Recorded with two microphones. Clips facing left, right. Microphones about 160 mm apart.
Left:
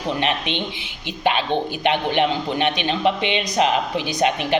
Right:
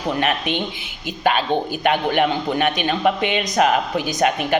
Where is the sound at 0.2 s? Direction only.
45° right (ahead or behind).